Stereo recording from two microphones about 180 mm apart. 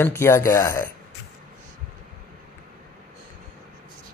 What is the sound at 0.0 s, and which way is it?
Speech, 15° left (ahead or behind).